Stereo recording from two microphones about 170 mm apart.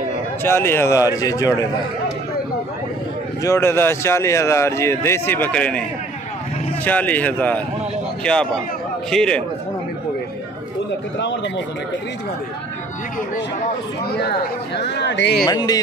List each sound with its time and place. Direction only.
0.4 s a man's voice: 15° left (ahead or behind)
3.4 s a man's voice: 15° left (ahead or behind)
11.1 s speech: 90° left
14.1 s speech: 75° left (ahead or behind); by 15.4 s 90° left
15.4 s a man's voice: 20° left (ahead or behind)